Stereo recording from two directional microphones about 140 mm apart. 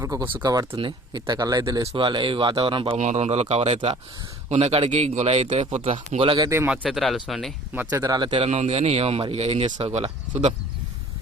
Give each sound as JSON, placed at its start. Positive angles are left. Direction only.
{"t": 0.0, "sound": "speech", "side_deg": -25}
{"t": 3.0, "sound": "a man's voice", "side_deg": -55}
{"t": 6.7, "sound": "speech", "side_deg": -5}
{"t": 7.7, "sound": "speech", "side_deg": -15}
{"t": 8.4, "sound": "a man's voice", "side_deg": -50}